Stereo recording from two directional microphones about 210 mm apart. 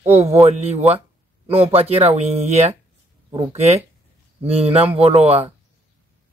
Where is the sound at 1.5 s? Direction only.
30° right (ahead or behind).